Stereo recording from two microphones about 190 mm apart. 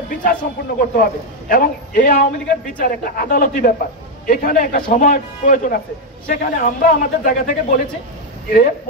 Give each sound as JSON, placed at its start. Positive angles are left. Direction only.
{"t": 0.2, "sound": "a man's voice", "side_deg": 50}